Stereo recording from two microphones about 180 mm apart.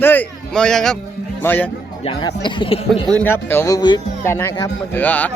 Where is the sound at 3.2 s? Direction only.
10° left (ahead or behind).